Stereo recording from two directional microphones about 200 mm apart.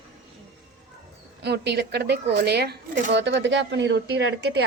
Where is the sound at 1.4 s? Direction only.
55° right (ahead or behind).